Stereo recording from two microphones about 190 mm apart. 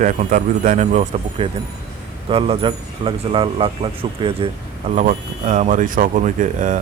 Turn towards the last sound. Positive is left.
turn(degrees=-40)  # may be behind; listen again after turning